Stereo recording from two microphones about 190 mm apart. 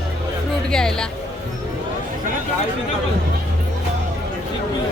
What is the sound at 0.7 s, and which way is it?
Speech, 5° left (ahead or behind).